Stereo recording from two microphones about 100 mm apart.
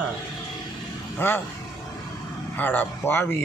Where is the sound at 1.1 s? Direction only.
25° left (ahead or behind).